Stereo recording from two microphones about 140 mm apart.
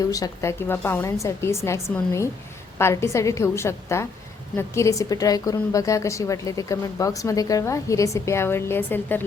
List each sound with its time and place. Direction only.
0.0 s a woman's voice: 25° left (ahead or behind)